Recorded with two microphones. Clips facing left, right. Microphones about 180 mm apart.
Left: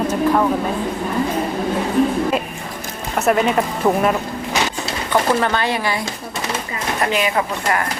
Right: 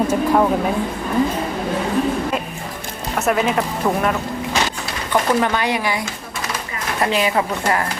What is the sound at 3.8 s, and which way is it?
Speech, 15° left (ahead or behind).